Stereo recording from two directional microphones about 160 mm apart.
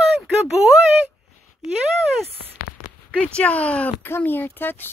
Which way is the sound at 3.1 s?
5° left (ahead or behind).